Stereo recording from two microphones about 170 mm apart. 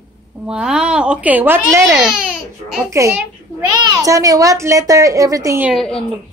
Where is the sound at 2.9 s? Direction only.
15° right (ahead or behind).